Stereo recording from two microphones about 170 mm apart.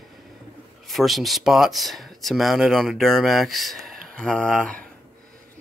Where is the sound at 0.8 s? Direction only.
Centre (ahead or behind).